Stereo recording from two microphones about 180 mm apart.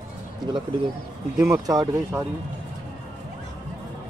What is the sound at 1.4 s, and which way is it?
Speech, 20° right (ahead or behind).